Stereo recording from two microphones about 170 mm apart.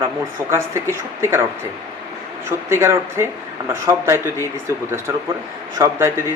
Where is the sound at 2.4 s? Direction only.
15° right (ahead or behind).